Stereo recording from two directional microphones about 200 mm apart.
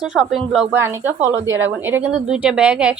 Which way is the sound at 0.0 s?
5° right (ahead or behind).